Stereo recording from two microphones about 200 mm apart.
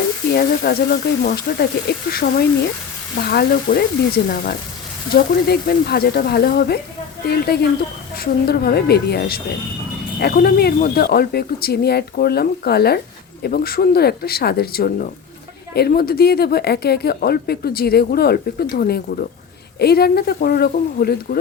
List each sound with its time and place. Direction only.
0.3 s a woman's voice: 50° left (ahead or behind)